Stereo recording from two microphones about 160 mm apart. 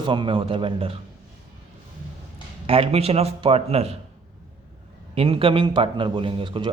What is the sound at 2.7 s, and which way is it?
Speech, 35° right (ahead or behind).